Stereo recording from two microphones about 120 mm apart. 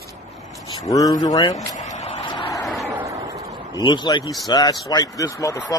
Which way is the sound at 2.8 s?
25° right (ahead or behind).